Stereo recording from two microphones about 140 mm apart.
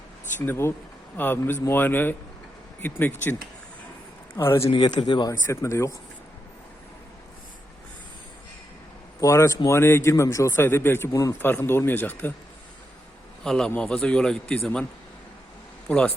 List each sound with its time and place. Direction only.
0.3 s a man's voice: 15° left (ahead or behind)
4.4 s a man's voice: 20° left (ahead or behind)
4.6 s speech: 35° left (ahead or behind)
5.5 s speech: 20° left (ahead or behind)
9.2 s a man's voice: 20° left (ahead or behind)
13.4 s a man's voice: 5° left (ahead or behind)
15.9 s a man's voice: 10° left (ahead or behind)